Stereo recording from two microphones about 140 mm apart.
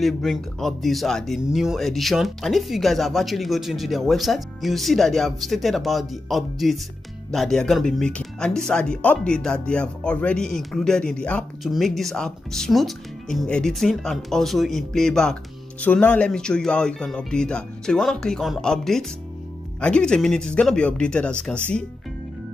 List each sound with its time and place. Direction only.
0.0 s speech: centre (ahead or behind)